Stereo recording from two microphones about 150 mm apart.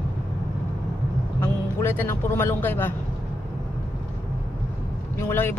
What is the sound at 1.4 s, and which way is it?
A man's voice, 15° left (ahead or behind).